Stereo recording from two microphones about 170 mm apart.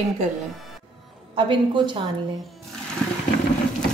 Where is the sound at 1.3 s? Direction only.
30° right (ahead or behind).